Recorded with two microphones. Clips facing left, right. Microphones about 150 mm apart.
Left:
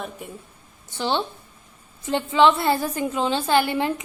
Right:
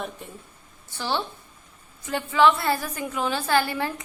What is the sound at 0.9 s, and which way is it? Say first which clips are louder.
A woman's voice: left 4 dB; 20° left (ahead or behind).